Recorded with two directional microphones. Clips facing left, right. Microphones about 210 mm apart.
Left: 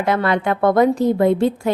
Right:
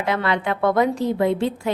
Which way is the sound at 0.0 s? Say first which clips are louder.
Left 4 dB; 45° left (ahead or behind).